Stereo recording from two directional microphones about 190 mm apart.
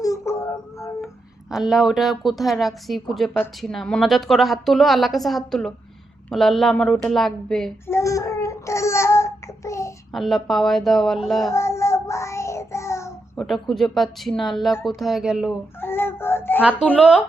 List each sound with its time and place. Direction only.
0.0 s a sound: 15° left (ahead or behind)
1.0 s speech: centre (ahead or behind)
7.9 s child singing: 15° left (ahead or behind)
10.1 s speech: centre (ahead or behind)
11.5 s child singing: 15° left (ahead or behind)
13.3 s speech: centre (ahead or behind)
15.8 s music: 10° left (ahead or behind)
16.6 s speech: 5° right (ahead or behind)